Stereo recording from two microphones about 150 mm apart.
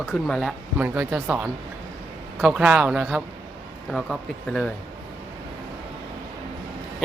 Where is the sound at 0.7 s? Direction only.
10° right (ahead or behind).